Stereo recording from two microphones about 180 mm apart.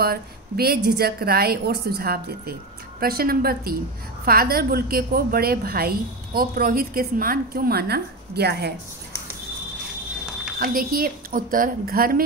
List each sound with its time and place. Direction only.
0.0 s a woman's voice: 60° right (ahead or behind)
10.6 s speech: 55° right (ahead or behind)